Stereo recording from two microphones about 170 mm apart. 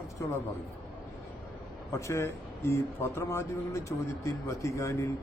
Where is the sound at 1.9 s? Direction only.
15° left (ahead or behind).